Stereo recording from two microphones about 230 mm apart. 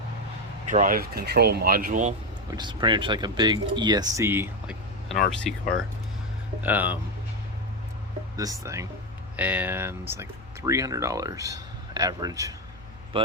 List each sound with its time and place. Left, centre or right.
0.7 s speech: right
2.5 s speech: centre
8.4 s speech: centre